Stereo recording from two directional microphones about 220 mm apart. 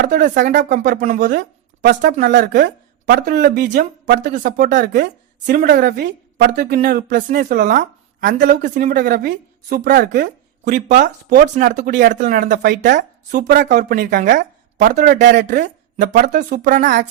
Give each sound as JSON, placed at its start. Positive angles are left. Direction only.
{"t": 0.0, "sound": "speech", "side_deg": -45}
{"t": 10.7, "sound": "speech", "side_deg": -35}
{"t": 15.4, "sound": "speech", "side_deg": -35}